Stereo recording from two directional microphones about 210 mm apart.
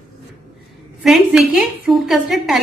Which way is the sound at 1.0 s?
Centre (ahead or behind).